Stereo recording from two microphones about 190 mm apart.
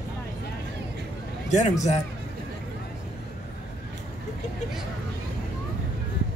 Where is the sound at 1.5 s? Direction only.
40° left (ahead or behind).